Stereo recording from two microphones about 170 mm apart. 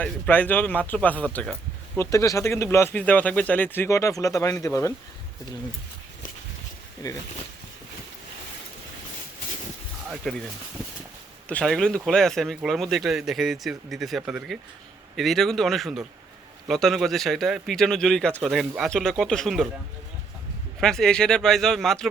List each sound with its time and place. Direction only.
0.0 s speech: 10° left (ahead or behind)
2.0 s speech: 20° left (ahead or behind)
7.0 s speech: 20° left (ahead or behind)
10.1 s speech: centre (ahead or behind)
11.4 s speech: 5° left (ahead or behind)
20.8 s speech: 5° left (ahead or behind)